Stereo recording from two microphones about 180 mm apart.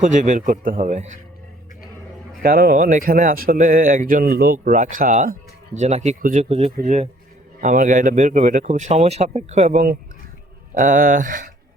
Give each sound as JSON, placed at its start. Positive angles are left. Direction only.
{"t": 0.0, "sound": "speech", "side_deg": -45}
{"t": 2.4, "sound": "speech", "side_deg": -55}